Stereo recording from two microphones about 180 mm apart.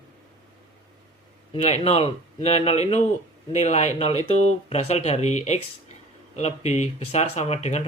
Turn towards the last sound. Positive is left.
turn(degrees=35)  # may be behind; listen again after turning